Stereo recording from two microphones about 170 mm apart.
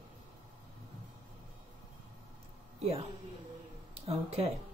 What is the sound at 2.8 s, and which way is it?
Speech, 35° right (ahead or behind).